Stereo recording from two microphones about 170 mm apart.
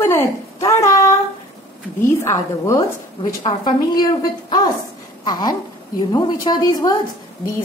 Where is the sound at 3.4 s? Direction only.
30° left (ahead or behind).